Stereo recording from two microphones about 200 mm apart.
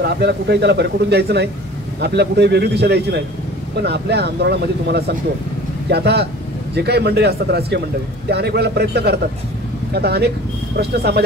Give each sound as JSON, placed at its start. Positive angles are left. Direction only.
{"t": 0.0, "sound": "a man's voice", "side_deg": -55}